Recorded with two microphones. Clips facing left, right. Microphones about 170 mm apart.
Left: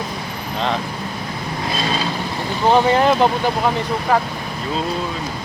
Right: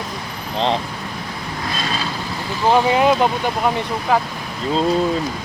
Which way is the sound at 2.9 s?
5° right (ahead or behind).